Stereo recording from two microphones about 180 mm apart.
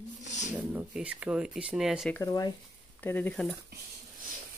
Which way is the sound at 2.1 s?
20° left (ahead or behind).